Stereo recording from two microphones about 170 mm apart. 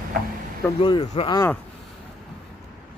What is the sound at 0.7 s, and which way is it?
Speech, 30° left (ahead or behind).